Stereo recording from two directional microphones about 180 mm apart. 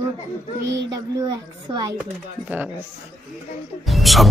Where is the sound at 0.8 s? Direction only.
20° right (ahead or behind).